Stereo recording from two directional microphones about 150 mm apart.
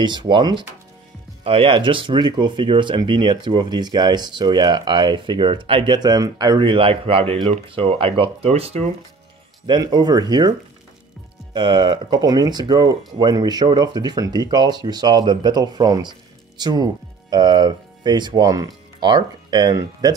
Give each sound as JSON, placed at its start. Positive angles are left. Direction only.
{"t": 0.0, "sound": "speech", "side_deg": -30}
{"t": 9.7, "sound": "speech", "side_deg": -30}
{"t": 11.5, "sound": "speech", "side_deg": -30}